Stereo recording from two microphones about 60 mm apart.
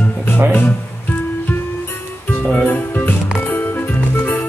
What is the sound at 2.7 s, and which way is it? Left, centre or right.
Music, left.